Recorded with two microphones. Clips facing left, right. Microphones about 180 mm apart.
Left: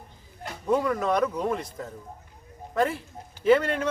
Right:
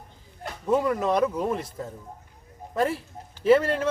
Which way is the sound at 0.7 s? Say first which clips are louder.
Right 1 dB; 5° right (ahead or behind).